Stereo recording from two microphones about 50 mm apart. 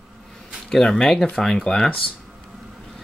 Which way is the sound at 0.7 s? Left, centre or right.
Centre.